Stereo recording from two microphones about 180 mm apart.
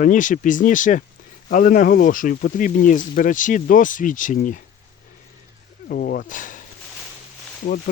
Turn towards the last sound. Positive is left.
turn(degrees=55)  # may be behind; listen again after turning